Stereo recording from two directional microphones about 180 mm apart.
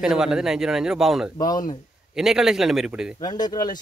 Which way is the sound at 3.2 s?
25° left (ahead or behind).